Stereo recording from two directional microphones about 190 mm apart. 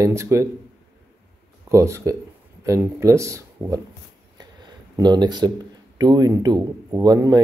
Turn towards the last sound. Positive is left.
turn(degrees=-20)  # may be behind; listen again after turning